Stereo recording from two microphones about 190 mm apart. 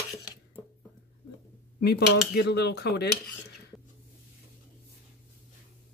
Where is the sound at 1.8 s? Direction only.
60° left (ahead or behind).